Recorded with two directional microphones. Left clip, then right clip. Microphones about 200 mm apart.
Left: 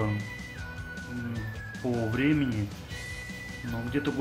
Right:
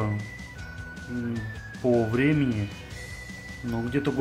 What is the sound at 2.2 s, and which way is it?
Speech, 40° right (ahead or behind).